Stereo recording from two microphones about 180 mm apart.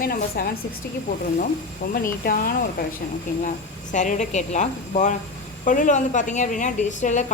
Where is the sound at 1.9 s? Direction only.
55° left (ahead or behind).